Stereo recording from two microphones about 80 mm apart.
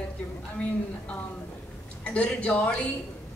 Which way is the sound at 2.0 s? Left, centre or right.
Centre.